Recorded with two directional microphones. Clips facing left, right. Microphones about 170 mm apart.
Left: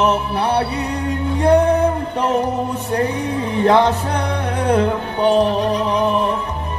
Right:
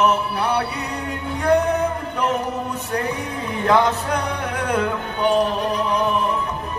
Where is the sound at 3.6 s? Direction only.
30° left (ahead or behind).